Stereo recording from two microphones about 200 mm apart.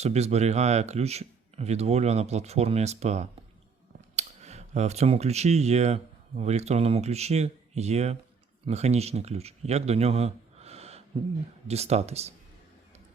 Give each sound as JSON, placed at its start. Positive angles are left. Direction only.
{"t": 0.0, "sound": "speech", "side_deg": -35}